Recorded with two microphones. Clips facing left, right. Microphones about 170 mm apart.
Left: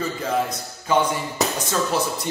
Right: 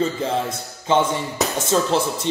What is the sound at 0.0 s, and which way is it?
A man's voice, 25° right (ahead or behind).